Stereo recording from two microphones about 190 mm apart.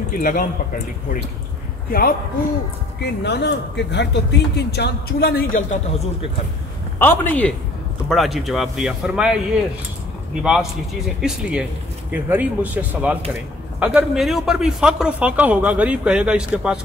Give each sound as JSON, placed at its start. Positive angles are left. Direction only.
{"t": 0.1, "sound": "speech", "side_deg": 45}
{"t": 1.9, "sound": "speech", "side_deg": 50}
{"t": 3.0, "sound": "a man's voice", "side_deg": 60}
{"t": 7.0, "sound": "speech", "side_deg": 10}
{"t": 10.4, "sound": "speech", "side_deg": -5}